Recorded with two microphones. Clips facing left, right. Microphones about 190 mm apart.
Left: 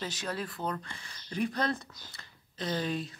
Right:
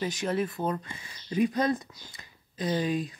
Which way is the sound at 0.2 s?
20° right (ahead or behind).